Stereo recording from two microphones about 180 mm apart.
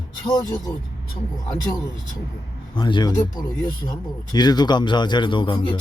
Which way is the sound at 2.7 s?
25° left (ahead or behind).